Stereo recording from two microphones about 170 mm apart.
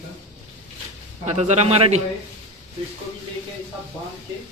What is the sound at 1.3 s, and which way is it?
Speech, 40° right (ahead or behind).